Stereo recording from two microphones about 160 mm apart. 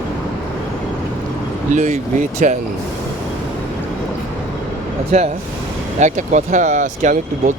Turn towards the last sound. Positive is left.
turn(degrees=-50)  # may be behind; listen again after turning